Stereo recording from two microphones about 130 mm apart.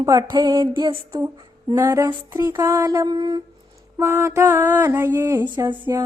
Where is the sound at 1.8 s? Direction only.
20° right (ahead or behind).